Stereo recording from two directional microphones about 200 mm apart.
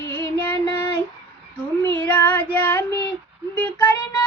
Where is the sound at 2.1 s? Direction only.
10° left (ahead or behind).